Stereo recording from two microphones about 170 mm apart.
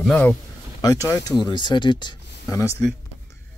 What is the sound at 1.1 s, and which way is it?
Speech, 20° left (ahead or behind).